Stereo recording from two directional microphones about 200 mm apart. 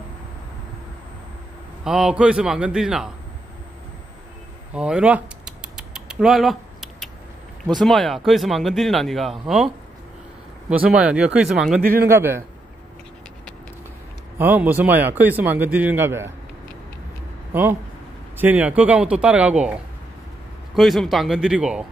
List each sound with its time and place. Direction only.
1.9 s speech: 5° right (ahead or behind)
4.7 s rodents: 5° right (ahead or behind)
7.6 s speech: centre (ahead or behind)
10.7 s speech: 5° right (ahead or behind)
11.8 s speech: 45° right (ahead or behind)
12.1 s speech: 10° right (ahead or behind)
14.4 s speech: 10° right (ahead or behind)
17.5 s speech: 10° right (ahead or behind)